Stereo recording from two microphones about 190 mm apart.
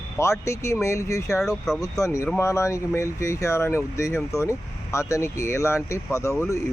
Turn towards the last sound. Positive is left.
turn(degrees=15)  # may be behind; listen again after turning